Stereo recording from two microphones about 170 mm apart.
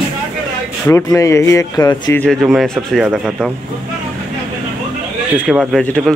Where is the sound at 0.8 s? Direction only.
15° left (ahead or behind).